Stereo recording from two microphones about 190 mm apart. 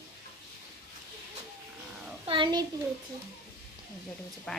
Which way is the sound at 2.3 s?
25° right (ahead or behind).